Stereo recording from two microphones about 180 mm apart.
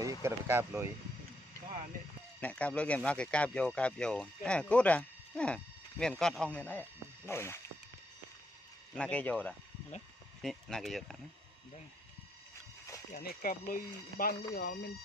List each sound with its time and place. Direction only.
0.2 s speech: 15° right (ahead or behind)
2.4 s speech: 5° left (ahead or behind)
8.9 s speech: 5° left (ahead or behind)
13.1 s speech: 55° left (ahead or behind)